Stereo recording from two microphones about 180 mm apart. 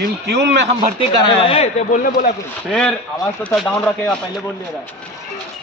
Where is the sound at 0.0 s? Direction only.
70° right (ahead or behind).